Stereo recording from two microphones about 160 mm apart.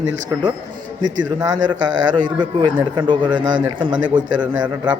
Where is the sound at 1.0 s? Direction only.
25° right (ahead or behind).